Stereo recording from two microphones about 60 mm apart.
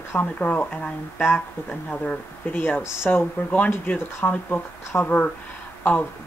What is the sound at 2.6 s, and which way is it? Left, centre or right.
Speech, left.